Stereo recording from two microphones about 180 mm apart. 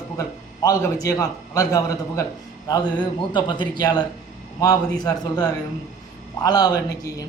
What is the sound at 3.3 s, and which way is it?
A man's voice, 25° left (ahead or behind).